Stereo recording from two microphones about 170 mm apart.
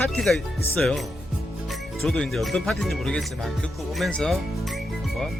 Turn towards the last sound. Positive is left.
turn(degrees=0)  # may be behind; listen again after turning